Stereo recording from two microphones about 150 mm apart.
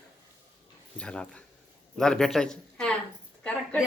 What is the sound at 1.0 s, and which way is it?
A woman's voice, 5° left (ahead or behind).